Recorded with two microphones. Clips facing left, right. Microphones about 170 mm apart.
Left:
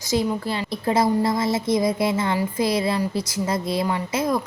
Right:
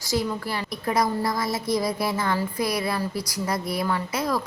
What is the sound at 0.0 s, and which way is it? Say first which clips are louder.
A woman's voice: left 4 dB; 20° left (ahead or behind).